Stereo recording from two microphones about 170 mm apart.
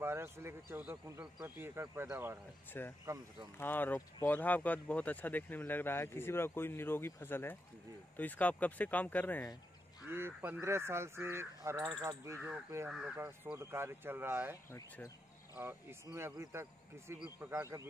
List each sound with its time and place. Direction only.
0.0 s speech: 15° right (ahead or behind)
2.8 s speech: 10° left (ahead or behind)
10.0 s speech: 15° right (ahead or behind)
12.8 s speech: 5° right (ahead or behind)
14.7 s speech: 15° left (ahead or behind)
15.5 s speech: 15° right (ahead or behind)